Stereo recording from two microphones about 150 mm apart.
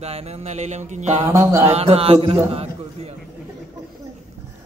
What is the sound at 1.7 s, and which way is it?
A man's voice, 45° right (ahead or behind).